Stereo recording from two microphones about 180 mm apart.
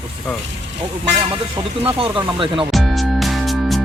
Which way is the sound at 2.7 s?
Centre (ahead or behind).